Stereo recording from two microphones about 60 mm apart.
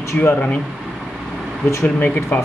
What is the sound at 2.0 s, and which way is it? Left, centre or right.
Speech, left.